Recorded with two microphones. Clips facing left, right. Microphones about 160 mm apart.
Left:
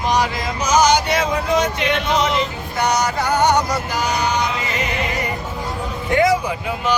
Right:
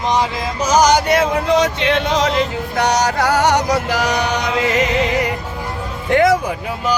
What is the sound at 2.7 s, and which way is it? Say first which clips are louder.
Music: right 2 dB; 80° right.